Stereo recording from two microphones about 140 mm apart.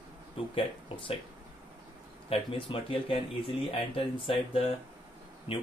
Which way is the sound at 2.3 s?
40° left (ahead or behind).